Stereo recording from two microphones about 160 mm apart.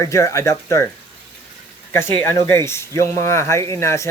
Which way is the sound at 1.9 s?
15° left (ahead or behind).